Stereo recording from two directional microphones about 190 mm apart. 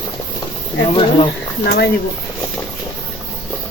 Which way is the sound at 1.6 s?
55° left (ahead or behind).